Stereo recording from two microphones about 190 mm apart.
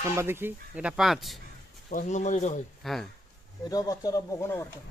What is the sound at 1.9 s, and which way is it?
Speech, 40° left (ahead or behind).